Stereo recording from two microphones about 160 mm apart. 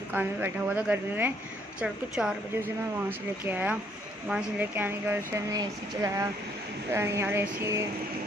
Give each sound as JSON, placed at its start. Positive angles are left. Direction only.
{"t": 0.1, "sound": "speech", "side_deg": -10}